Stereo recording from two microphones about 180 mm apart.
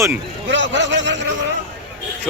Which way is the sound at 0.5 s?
90° right.